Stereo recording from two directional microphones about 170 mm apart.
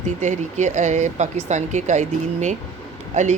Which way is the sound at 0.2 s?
45° right (ahead or behind).